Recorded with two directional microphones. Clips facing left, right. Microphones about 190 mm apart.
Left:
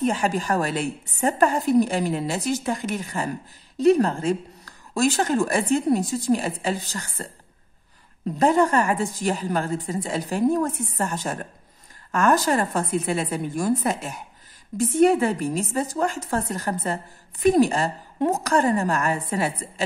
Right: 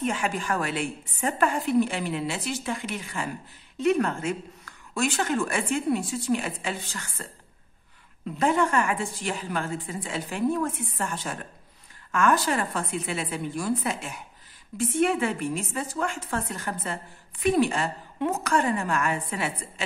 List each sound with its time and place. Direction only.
0.0 s a woman's voice: 35° left (ahead or behind)
8.4 s a woman's voice: 40° left (ahead or behind)